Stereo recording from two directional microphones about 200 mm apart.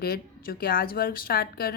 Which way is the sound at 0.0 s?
50° left (ahead or behind).